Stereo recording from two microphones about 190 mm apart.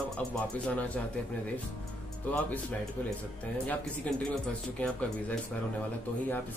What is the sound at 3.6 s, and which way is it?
Speech, 5° left (ahead or behind).